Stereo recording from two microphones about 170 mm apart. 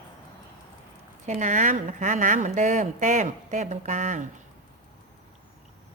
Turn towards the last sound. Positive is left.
turn(degrees=-45)  # may be behind; listen again after turning